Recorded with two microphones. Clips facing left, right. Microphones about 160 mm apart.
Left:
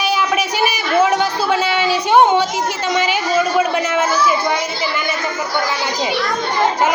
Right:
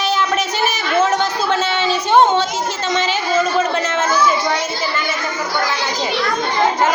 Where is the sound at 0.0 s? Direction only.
10° left (ahead or behind).